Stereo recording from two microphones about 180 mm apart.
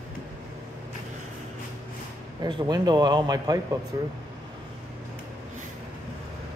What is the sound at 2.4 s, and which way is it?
Speech, 25° right (ahead or behind).